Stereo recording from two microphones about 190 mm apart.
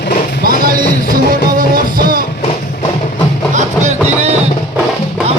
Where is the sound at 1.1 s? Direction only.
50° right (ahead or behind).